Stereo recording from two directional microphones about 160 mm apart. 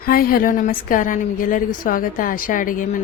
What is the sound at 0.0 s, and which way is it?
A woman's voice, 65° left (ahead or behind).